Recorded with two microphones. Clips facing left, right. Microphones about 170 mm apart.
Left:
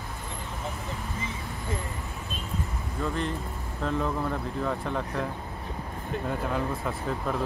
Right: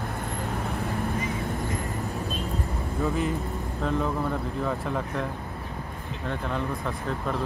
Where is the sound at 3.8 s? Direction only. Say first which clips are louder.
Right 1 dB; centre (ahead or behind).